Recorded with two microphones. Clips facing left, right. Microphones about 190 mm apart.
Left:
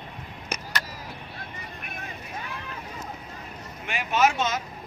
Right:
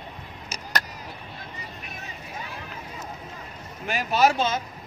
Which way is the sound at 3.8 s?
35° right (ahead or behind).